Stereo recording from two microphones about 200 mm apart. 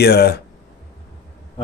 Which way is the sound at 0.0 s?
55° left (ahead or behind).